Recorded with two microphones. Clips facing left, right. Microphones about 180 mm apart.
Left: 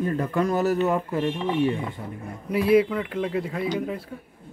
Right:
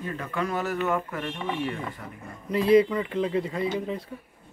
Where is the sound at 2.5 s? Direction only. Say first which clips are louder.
Even; 5° left (ahead or behind).